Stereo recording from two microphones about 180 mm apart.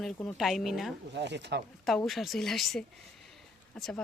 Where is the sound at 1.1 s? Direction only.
75° right (ahead or behind).